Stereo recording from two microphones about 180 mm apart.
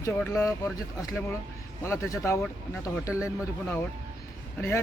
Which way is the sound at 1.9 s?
15° left (ahead or behind).